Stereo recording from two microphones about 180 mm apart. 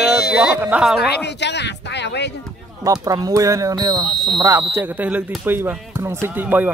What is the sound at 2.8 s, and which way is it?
Speech, 20° right (ahead or behind).